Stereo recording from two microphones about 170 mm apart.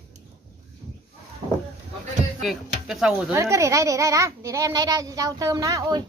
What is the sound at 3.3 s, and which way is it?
A child's voice, 15° right (ahead or behind).